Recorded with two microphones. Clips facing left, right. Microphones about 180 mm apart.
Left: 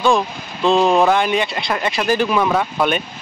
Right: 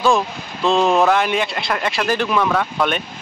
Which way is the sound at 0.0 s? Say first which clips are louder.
Left 1 dB; centre (ahead or behind).